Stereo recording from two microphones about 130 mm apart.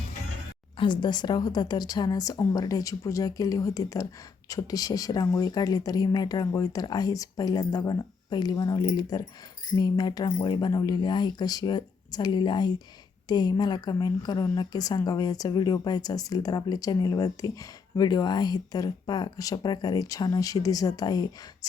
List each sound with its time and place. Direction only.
0.8 s a woman's voice: 35° left (ahead or behind)